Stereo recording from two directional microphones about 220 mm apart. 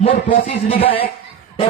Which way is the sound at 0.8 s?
25° left (ahead or behind).